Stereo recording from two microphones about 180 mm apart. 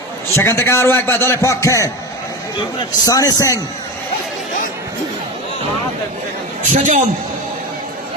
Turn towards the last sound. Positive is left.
turn(degrees=-45)  # may be behind; listen again after turning